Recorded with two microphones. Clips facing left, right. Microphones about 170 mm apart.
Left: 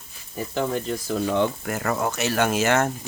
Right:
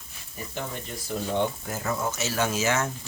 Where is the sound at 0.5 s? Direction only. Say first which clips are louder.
Left 10 dB; 90° left.